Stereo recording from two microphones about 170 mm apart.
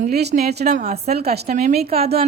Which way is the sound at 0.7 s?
45° right (ahead or behind).